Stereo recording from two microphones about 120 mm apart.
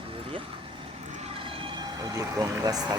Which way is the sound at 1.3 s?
50° right (ahead or behind).